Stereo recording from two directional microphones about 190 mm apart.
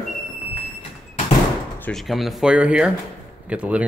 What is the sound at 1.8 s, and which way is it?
Speech, 5° left (ahead or behind).